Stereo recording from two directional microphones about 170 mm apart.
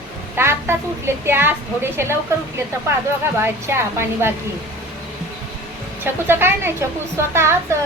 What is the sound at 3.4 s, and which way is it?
Speech, 15° right (ahead or behind).